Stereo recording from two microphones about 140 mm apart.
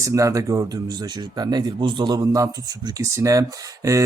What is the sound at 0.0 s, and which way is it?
Speech, 20° right (ahead or behind).